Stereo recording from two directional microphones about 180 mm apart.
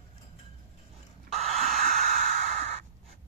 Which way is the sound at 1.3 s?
40° right (ahead or behind).